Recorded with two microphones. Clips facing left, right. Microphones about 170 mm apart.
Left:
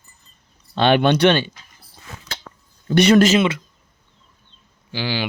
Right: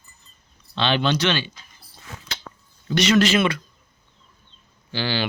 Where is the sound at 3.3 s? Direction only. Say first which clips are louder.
Left 3 dB; 20° left (ahead or behind).